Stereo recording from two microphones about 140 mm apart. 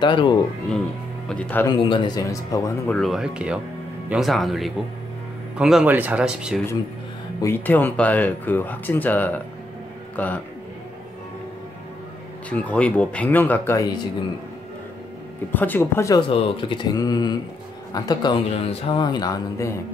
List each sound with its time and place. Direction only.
0.0 s speech: 35° left (ahead or behind)
1.3 s speech: 10° left (ahead or behind)
1.7 s speech: 35° left (ahead or behind)
2.9 s speech: centre (ahead or behind)
7.4 s a man's voice: 15° left (ahead or behind)
12.4 s speech: 10° left (ahead or behind)
15.5 s speech: 15° left (ahead or behind)
16.2 s speech: 40° left (ahead or behind)
18.5 s speech: 45° left (ahead or behind)
18.9 s speech: 30° left (ahead or behind)